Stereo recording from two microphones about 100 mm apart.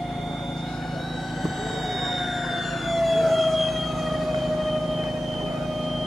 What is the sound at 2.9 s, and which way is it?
Emergency vehicle, centre (ahead or behind).